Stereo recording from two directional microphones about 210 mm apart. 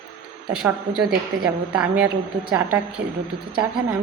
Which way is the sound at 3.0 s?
50° right (ahead or behind).